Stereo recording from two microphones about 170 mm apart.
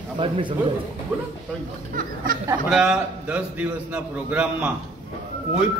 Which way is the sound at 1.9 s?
55° right (ahead or behind).